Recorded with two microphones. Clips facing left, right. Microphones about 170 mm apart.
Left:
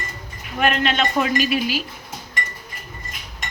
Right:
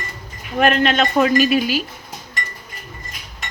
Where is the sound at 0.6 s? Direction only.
40° right (ahead or behind).